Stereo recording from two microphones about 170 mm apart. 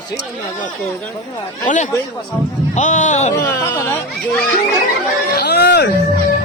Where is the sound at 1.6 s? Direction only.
45° left (ahead or behind).